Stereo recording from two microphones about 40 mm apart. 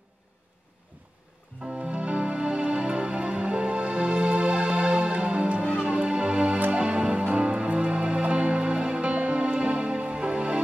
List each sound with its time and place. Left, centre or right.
1.7 s music: right